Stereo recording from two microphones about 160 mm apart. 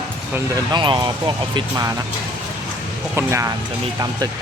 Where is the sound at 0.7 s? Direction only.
30° right (ahead or behind).